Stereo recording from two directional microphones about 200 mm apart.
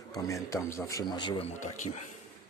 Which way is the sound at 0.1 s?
15° left (ahead or behind).